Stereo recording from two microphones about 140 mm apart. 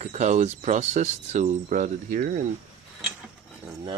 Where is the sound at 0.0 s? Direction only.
55° right (ahead or behind); by 2.4 s 80° right.